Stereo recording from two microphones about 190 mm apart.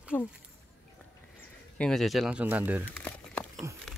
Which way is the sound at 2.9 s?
10° left (ahead or behind).